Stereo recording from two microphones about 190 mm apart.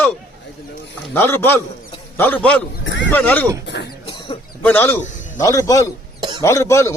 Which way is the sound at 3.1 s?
10° left (ahead or behind).